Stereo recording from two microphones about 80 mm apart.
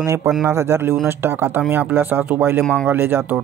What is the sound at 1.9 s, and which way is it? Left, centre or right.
Speech, right.